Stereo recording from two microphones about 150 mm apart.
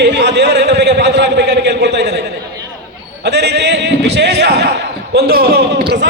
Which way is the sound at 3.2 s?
90° right.